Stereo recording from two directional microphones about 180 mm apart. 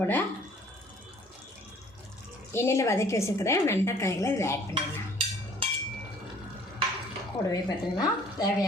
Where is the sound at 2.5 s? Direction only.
15° left (ahead or behind).